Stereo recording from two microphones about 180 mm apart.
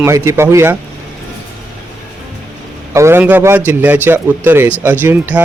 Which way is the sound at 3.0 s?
15° right (ahead or behind).